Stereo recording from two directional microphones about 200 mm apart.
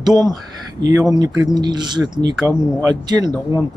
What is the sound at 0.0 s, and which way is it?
Speech, 20° right (ahead or behind).